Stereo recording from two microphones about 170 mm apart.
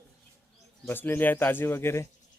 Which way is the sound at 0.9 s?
10° left (ahead or behind).